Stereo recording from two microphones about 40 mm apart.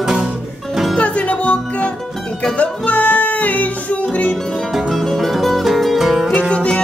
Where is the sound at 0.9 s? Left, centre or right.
Left.